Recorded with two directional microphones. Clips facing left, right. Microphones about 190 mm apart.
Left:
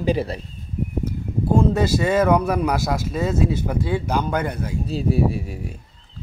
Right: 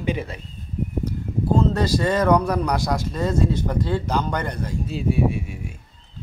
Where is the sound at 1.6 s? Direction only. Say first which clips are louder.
Left 2 dB; 10° left (ahead or behind).